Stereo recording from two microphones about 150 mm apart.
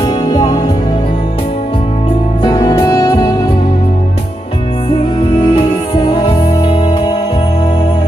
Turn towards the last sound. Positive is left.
turn(degrees=35)  # may be behind; listen again after turning